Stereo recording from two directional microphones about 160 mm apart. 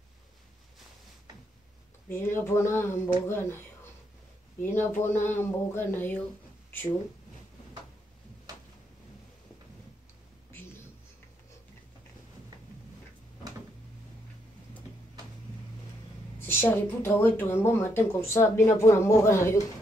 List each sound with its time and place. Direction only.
2.0 s speech: 15° left (ahead or behind)
16.3 s speech: 15° left (ahead or behind)